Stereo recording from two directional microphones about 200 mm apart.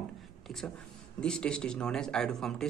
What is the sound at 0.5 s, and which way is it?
A man's voice, centre (ahead or behind).